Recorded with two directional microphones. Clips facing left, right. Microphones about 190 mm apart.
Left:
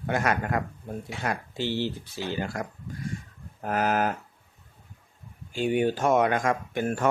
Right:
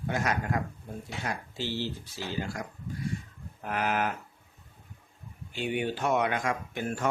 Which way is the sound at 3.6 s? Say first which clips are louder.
Left 4 dB; 40° left (ahead or behind).